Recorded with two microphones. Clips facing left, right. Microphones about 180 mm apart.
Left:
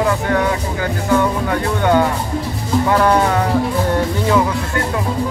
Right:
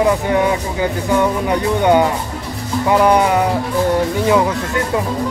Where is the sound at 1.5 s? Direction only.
15° right (ahead or behind).